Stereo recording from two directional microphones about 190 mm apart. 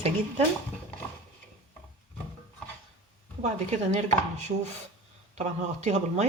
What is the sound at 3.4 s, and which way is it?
Speech, 35° right (ahead or behind).